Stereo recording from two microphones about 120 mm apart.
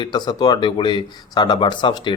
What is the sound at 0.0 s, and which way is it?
Speech, 35° left (ahead or behind).